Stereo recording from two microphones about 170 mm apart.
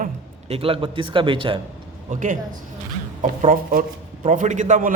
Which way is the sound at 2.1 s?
50° right (ahead or behind).